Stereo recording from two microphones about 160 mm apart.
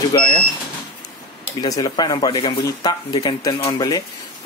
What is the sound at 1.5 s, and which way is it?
Speech, 20° left (ahead or behind).